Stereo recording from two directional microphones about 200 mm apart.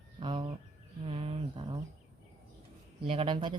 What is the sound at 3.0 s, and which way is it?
Speech, 25° right (ahead or behind).